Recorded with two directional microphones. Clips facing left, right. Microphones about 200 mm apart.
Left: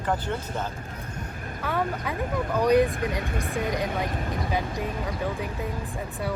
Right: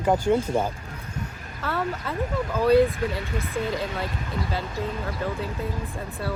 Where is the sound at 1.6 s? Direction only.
15° left (ahead or behind).